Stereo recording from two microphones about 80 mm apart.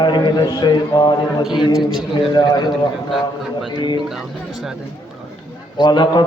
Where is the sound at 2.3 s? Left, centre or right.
Left.